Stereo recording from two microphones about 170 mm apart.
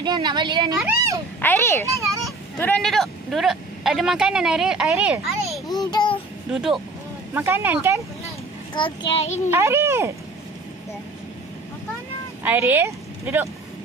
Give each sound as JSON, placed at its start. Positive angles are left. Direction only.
{"t": 0.0, "sound": "speech", "side_deg": -25}
{"t": 1.4, "sound": "a child's voice", "side_deg": 15}
{"t": 5.8, "sound": "babbling", "side_deg": 25}
{"t": 6.5, "sound": "speech", "side_deg": -5}
{"t": 8.7, "sound": "a child's voice", "side_deg": 30}
{"t": 9.5, "sound": "speech", "side_deg": -15}
{"t": 12.4, "sound": "speech", "side_deg": -10}